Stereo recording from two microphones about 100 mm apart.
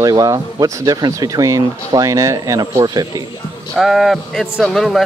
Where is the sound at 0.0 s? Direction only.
35° right (ahead or behind).